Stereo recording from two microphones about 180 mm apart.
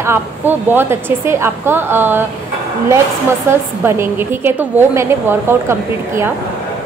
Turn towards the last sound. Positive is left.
turn(degrees=-15)  # may be behind; listen again after turning